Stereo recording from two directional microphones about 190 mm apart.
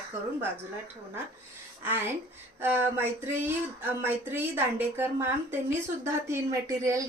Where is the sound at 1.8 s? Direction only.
10° right (ahead or behind).